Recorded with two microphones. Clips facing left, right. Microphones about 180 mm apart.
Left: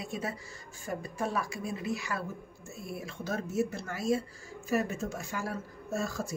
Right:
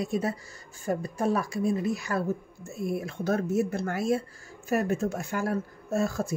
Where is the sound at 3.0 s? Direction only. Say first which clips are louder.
Right 5 dB; 55° right (ahead or behind).